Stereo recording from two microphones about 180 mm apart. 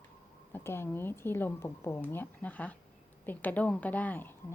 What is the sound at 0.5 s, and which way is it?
A woman's voice, 15° left (ahead or behind).